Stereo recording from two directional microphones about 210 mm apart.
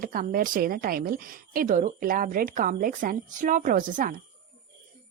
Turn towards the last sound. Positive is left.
turn(degrees=-40)  # may be behind; listen again after turning